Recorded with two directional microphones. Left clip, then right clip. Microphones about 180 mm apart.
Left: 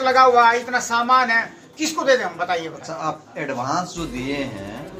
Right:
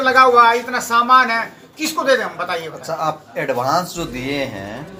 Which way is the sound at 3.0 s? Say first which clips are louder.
Right 4 dB; 50° right (ahead or behind).